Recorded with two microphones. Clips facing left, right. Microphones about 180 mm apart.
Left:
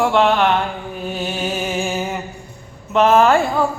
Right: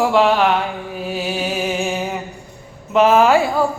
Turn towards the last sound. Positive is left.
turn(degrees=-5)  # may be behind; listen again after turning